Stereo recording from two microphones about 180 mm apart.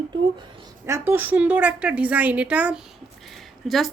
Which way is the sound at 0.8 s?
15° right (ahead or behind).